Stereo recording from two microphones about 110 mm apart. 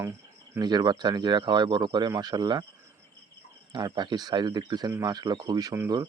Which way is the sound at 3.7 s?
40° right (ahead or behind).